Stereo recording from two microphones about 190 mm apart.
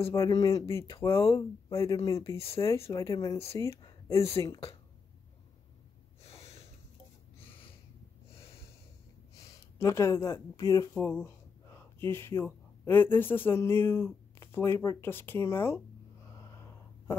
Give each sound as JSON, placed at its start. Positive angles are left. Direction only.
{"t": 0.0, "sound": "speech", "side_deg": 20}
{"t": 2.3, "sound": "speech", "side_deg": 30}
{"t": 6.2, "sound": "snort", "side_deg": 35}
{"t": 9.4, "sound": "speech", "side_deg": 15}
{"t": 16.3, "sound": "a sound", "side_deg": 15}